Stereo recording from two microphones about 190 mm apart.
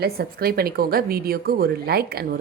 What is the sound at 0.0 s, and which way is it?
A woman's voice, 55° right (ahead or behind).